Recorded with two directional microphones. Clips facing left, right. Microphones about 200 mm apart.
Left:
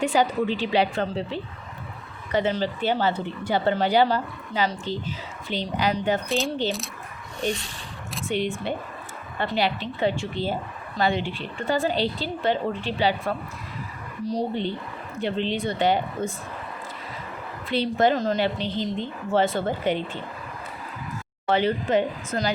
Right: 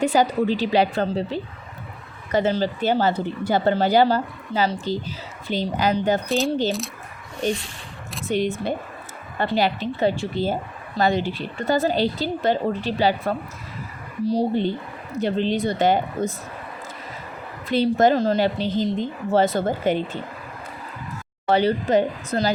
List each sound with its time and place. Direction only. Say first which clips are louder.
0.0 s speech: right 3 dB; 40° right (ahead or behind)
6.2 s speech: right 4 dB; centre (ahead or behind)
8.3 s speech: right 4 dB; 40° right (ahead or behind)
17.7 s speech: right 4 dB; 45° right (ahead or behind)
21.4 s speech: right 3 dB; 40° right (ahead or behind)